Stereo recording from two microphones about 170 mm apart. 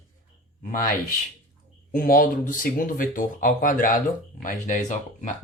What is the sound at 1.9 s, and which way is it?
Speech, 55° left (ahead or behind).